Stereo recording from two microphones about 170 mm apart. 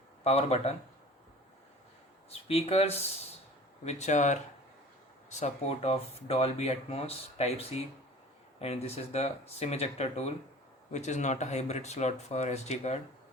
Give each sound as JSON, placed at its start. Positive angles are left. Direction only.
{"t": 0.3, "sound": "speech", "side_deg": 40}
{"t": 2.3, "sound": "speech", "side_deg": 35}